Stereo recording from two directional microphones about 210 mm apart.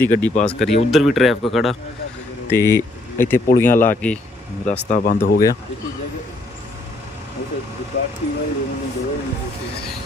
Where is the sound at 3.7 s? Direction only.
40° left (ahead or behind).